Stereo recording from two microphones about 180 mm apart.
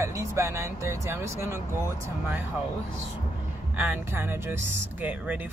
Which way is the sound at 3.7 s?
10° right (ahead or behind).